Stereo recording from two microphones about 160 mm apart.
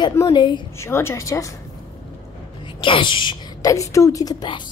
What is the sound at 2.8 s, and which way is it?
A woman's voice, 30° left (ahead or behind).